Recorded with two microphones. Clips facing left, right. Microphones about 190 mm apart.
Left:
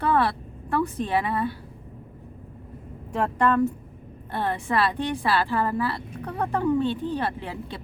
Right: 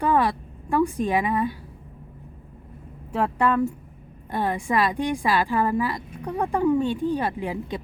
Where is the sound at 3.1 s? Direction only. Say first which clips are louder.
Even; 5° right (ahead or behind).